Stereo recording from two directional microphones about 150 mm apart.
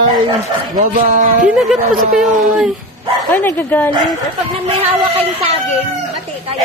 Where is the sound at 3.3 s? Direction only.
15° left (ahead or behind).